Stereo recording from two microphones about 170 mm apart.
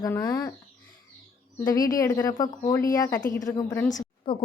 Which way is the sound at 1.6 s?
20° left (ahead or behind).